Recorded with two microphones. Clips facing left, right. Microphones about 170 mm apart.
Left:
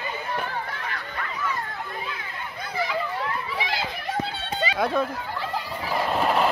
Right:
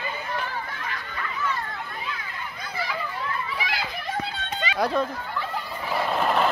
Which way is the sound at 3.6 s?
25° left (ahead or behind).